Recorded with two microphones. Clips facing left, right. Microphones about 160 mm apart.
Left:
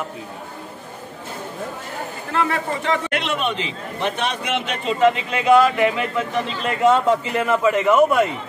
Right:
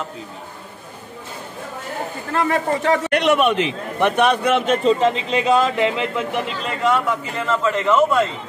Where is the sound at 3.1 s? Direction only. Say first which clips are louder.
Right 7 dB; 65° right (ahead or behind); by 4.9 s 45° right (ahead or behind).